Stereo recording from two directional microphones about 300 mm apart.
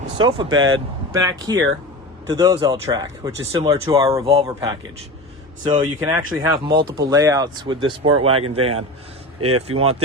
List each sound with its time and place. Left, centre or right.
0.2 s speech: centre
9.4 s speech: right